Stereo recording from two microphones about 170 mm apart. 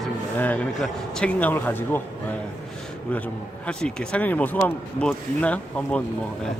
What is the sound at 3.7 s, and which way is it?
Speech, 5° left (ahead or behind).